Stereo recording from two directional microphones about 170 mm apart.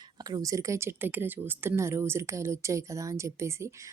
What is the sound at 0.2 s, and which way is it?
A woman's voice, 20° right (ahead or behind).